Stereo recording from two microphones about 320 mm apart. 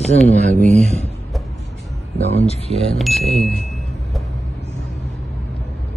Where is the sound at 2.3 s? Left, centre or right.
Centre.